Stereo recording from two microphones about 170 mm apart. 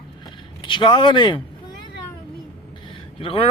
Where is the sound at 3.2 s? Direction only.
35° left (ahead or behind).